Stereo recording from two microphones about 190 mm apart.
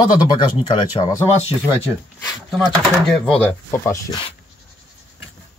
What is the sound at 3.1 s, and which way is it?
Speech, 5° left (ahead or behind).